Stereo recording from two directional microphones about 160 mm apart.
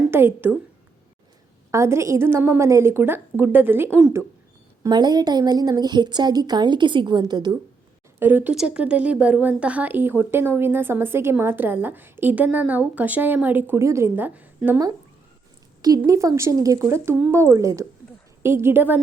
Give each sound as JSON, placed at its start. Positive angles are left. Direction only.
{"t": 0.1, "sound": "a woman's voice", "side_deg": -15}
{"t": 1.7, "sound": "a woman's voice", "side_deg": -20}
{"t": 4.8, "sound": "a woman's voice", "side_deg": -25}
{"t": 8.2, "sound": "a woman's voice", "side_deg": -10}
{"t": 16.0, "sound": "a woman's voice", "side_deg": -20}